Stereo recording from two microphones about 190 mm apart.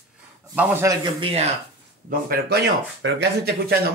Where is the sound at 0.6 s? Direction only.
15° right (ahead or behind).